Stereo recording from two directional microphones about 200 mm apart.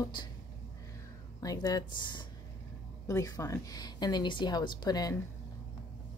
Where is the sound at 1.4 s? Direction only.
20° left (ahead or behind).